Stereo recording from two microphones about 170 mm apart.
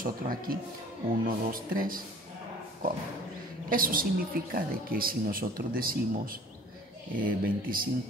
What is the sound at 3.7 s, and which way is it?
Speech, 55° right (ahead or behind).